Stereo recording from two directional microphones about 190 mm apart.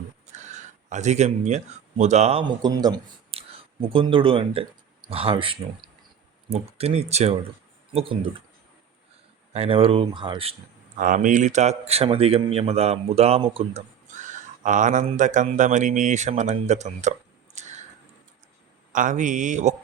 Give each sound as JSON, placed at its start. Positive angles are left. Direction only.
{"t": 0.3, "sound": "speech", "side_deg": -40}
{"t": 2.6, "sound": "a man's voice", "side_deg": -20}
{"t": 9.5, "sound": "speech", "side_deg": -30}
{"t": 10.9, "sound": "a man's voice", "side_deg": -45}
{"t": 18.9, "sound": "a man's voice", "side_deg": -40}